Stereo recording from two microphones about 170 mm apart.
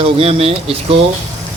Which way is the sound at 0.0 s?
35° right (ahead or behind).